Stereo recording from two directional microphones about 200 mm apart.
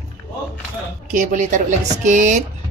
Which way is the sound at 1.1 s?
40° right (ahead or behind).